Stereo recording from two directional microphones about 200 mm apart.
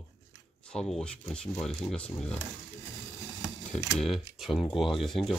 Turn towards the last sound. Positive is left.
turn(degrees=0)  # may be behind; listen again after turning